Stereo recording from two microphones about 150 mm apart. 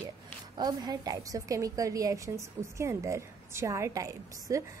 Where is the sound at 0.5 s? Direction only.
25° right (ahead or behind).